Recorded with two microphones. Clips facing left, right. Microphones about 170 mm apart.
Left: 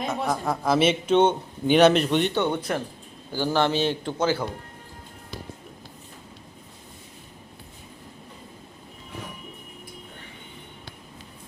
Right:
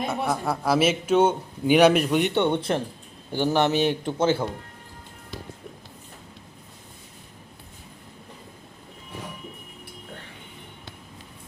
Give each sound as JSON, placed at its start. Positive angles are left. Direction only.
{"t": 0.0, "sound": "a man's voice", "side_deg": -10}
{"t": 2.3, "sound": "a man's voice", "side_deg": -25}